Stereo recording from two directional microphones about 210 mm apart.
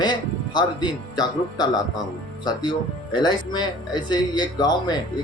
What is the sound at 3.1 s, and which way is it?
Speech, 20° left (ahead or behind).